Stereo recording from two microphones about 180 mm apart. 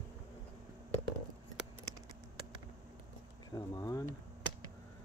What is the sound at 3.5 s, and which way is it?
Speech, 20° left (ahead or behind).